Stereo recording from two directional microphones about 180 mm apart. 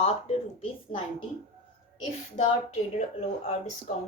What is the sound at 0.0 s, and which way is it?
Speech, 35° left (ahead or behind).